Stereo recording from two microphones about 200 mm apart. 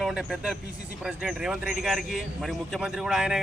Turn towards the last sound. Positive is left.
turn(degrees=-5)  # may be behind; listen again after turning